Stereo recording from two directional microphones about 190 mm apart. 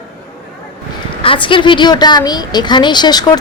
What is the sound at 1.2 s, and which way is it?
A woman's voice, 25° left (ahead or behind).